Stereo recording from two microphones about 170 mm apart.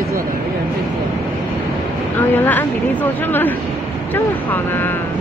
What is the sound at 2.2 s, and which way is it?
Speech, 10° left (ahead or behind).